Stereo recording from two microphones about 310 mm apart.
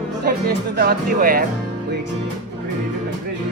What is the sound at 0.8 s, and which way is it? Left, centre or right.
Speech, right.